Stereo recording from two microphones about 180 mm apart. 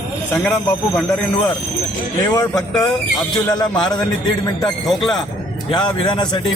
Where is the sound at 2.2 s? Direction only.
20° left (ahead or behind).